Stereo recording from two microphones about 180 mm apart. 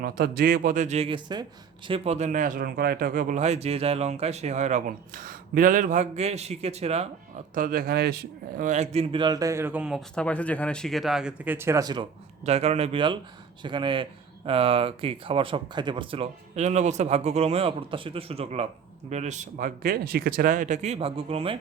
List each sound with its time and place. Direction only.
0.0 s speech: 55° right (ahead or behind); by 1.5 s 25° right (ahead or behind)
1.9 s speech: 40° right (ahead or behind)
7.5 s speech: 50° right (ahead or behind); by 10.0 s 5° right (ahead or behind)
10.2 s speech: 5° left (ahead or behind); by 12.0 s 20° right (ahead or behind)
12.5 s speech: 35° right (ahead or behind)